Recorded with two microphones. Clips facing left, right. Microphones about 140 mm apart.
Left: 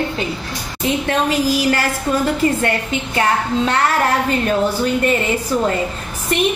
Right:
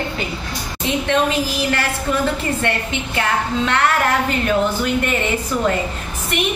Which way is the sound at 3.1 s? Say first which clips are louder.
Left 3 dB; 35° left (ahead or behind).